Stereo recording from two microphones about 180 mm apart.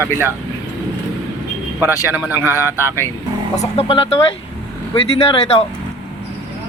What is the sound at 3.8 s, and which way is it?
Speech, 30° left (ahead or behind).